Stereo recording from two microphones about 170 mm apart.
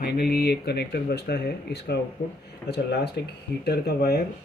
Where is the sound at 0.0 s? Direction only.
65° left (ahead or behind); by 3.1 s 80° left.